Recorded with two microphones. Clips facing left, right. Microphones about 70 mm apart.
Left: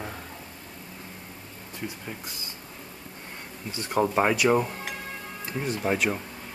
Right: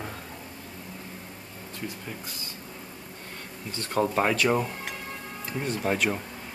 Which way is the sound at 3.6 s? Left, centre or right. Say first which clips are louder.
Left 1 dB; centre.